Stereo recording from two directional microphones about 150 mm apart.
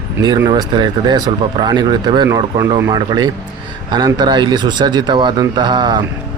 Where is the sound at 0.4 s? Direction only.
30° right (ahead or behind).